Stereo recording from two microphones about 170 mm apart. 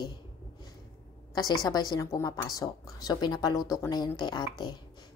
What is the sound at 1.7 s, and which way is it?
Speech, 20° left (ahead or behind).